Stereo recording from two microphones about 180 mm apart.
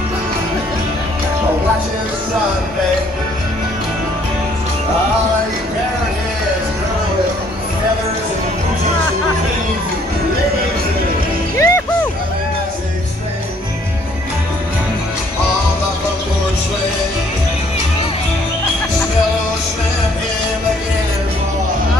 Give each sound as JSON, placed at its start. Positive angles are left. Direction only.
{"t": 11.5, "sound": "music", "side_deg": 15}